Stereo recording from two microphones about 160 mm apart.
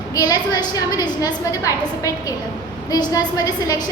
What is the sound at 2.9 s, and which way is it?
Speech, 25° left (ahead or behind).